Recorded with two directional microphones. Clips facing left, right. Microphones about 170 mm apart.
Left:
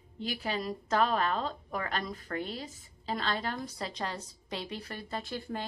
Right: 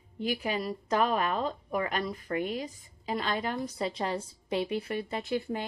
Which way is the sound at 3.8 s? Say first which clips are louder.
Right 5 dB; 25° right (ahead or behind).